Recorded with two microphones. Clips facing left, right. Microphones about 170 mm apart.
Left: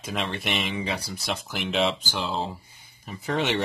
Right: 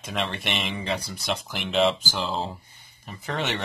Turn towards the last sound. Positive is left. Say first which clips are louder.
# left 4 dB
turn(degrees=10)  # may be behind; listen again after turning